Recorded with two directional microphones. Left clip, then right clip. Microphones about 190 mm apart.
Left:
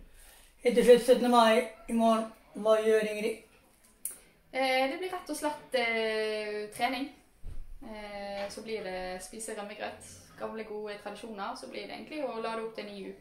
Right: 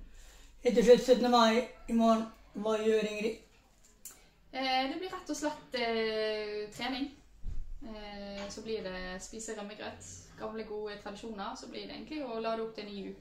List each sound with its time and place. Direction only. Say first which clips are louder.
0.6 s a woman's voice: left 2 dB; 25° right (ahead or behind)
4.5 s speech: left 4 dB; 10° left (ahead or behind)